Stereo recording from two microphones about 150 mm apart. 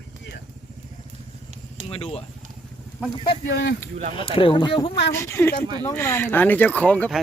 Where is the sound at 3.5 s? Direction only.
90° left.